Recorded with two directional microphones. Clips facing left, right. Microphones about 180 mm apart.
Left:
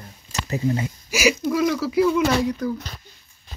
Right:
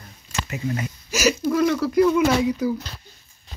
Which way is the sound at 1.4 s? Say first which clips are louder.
Right 1 dB; 5° left (ahead or behind).